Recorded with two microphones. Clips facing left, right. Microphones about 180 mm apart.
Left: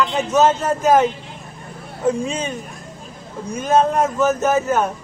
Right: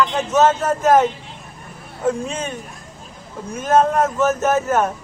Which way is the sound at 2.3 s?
Centre (ahead or behind).